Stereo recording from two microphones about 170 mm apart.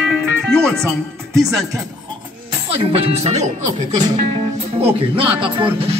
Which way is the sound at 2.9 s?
35° right (ahead or behind).